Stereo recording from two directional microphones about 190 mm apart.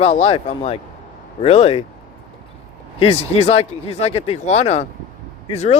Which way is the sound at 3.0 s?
30° left (ahead or behind).